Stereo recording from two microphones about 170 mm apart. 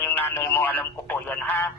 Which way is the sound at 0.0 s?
10° left (ahead or behind).